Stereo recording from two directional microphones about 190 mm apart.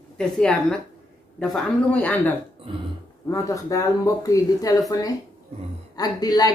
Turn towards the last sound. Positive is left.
turn(degrees=20)  # may be behind; listen again after turning